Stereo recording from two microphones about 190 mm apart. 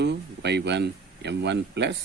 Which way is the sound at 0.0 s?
65° right (ahead or behind).